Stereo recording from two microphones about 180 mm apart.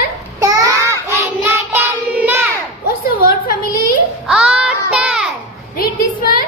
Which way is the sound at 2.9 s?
55° left (ahead or behind).